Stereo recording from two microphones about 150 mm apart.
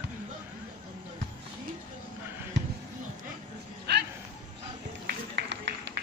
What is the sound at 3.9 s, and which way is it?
Music, 90° right.